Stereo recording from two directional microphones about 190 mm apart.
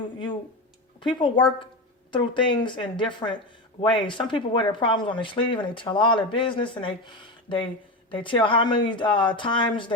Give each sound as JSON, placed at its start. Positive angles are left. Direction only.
{"t": 0.9, "sound": "speech", "side_deg": 25}